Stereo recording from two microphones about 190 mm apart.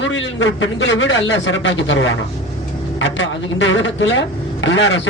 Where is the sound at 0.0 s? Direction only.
80° left.